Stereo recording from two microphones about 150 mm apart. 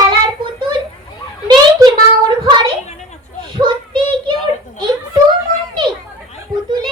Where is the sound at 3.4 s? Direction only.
35° right (ahead or behind).